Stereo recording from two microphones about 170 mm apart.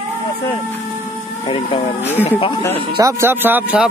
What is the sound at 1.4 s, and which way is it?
Speech, 30° left (ahead or behind).